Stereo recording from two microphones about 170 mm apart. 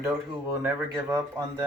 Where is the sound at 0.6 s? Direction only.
15° right (ahead or behind).